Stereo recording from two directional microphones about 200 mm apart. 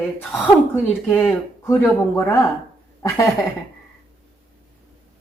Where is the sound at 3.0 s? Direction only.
15° left (ahead or behind).